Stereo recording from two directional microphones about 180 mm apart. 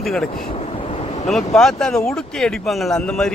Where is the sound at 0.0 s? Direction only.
Centre (ahead or behind).